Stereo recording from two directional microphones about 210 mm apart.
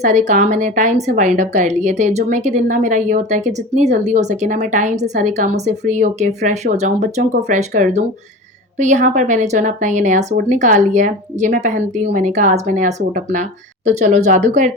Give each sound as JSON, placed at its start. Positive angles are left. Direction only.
{"t": 0.0, "sound": "a woman's voice", "side_deg": -35}